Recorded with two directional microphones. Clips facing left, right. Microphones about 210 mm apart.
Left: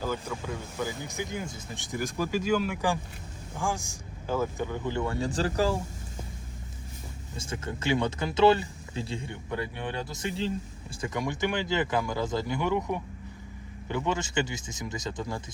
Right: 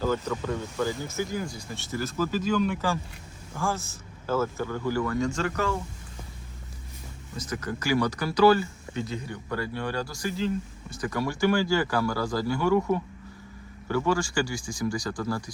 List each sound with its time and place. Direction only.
0.0 s speech: 10° left (ahead or behind); by 5.8 s 30° left (ahead or behind)
7.3 s speech: 25° left (ahead or behind)